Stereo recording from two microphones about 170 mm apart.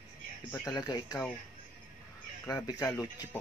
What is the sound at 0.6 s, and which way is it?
Speech, 25° left (ahead or behind).